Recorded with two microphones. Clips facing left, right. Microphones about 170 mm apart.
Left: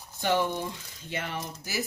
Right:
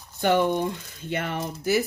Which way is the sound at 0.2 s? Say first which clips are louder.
Right 6 dB; 55° right (ahead or behind).